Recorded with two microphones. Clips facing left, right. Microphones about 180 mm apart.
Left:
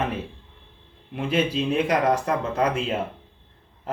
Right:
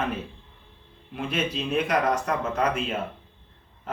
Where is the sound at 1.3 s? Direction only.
30° left (ahead or behind).